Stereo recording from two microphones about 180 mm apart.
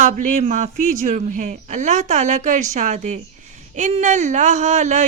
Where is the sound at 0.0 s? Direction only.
45° right (ahead or behind).